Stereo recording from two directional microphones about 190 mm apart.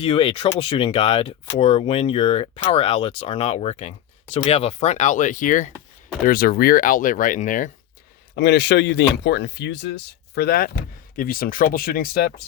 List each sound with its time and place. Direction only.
0.0 s speech: 30° left (ahead or behind)
8.4 s speech: 65° left (ahead or behind)